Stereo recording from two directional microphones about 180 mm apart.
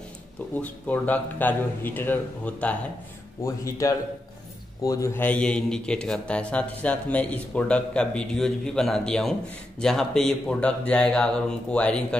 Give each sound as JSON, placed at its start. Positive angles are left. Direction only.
{"t": 0.6, "sound": "speech", "side_deg": 10}